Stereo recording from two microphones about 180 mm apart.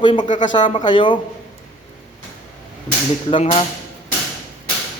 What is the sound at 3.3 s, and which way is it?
Speech, 30° left (ahead or behind).